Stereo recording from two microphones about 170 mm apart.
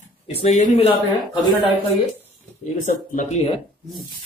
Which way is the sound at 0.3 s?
40° left (ahead or behind).